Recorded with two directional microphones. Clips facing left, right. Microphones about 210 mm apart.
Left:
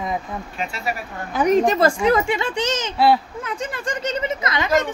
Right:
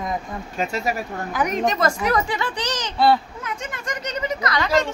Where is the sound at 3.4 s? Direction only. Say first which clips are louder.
Left 4 dB; 30° left (ahead or behind).